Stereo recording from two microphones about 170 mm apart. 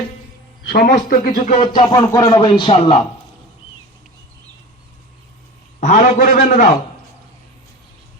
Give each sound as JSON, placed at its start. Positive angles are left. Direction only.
{"t": 0.7, "sound": "a man's voice", "side_deg": 55}
{"t": 1.5, "sound": "speech", "side_deg": 30}
{"t": 5.8, "sound": "a man's voice", "side_deg": 50}